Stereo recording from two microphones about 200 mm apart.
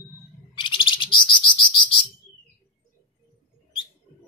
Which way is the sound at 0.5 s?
25° left (ahead or behind).